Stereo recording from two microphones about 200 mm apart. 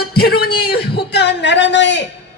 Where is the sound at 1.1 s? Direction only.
60° left (ahead or behind).